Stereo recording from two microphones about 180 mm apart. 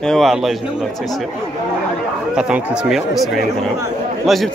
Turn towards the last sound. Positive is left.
turn(degrees=0)  # may be behind; listen again after turning